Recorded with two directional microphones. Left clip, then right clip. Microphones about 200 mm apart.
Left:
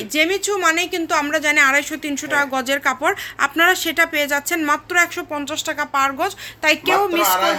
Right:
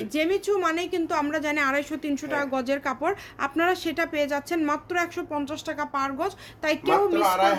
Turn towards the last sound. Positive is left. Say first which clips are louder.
# left 4 dB
turn(degrees=0)  # may be behind; listen again after turning